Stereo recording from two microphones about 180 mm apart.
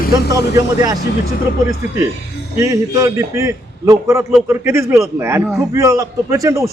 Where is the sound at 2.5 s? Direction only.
20° right (ahead or behind).